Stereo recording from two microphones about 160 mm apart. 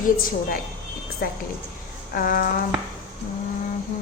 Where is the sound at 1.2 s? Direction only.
65° left (ahead or behind).